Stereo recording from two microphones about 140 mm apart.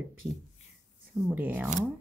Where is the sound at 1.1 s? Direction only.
15° right (ahead or behind).